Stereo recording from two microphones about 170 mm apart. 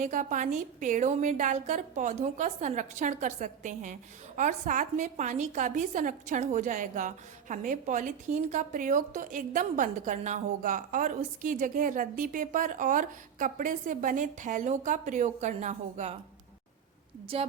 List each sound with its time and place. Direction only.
0.0 s a woman's voice: 50° right (ahead or behind)
17.3 s a woman's voice: 35° right (ahead or behind)